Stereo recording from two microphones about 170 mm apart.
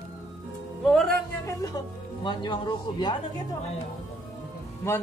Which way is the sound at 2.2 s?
25° left (ahead or behind).